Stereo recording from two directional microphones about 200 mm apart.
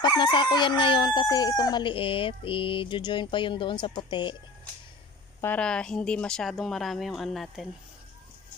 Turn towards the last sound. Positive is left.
turn(degrees=0)  # may be behind; listen again after turning